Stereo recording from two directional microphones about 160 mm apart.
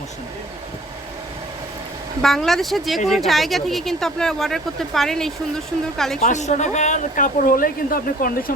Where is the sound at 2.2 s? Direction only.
Centre (ahead or behind).